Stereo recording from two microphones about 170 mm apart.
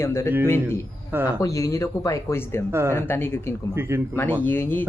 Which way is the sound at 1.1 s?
10° right (ahead or behind).